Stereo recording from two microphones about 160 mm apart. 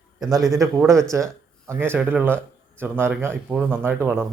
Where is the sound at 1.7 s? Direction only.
15° right (ahead or behind).